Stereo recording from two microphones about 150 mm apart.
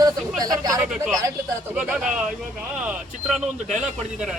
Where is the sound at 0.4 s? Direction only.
25° right (ahead or behind).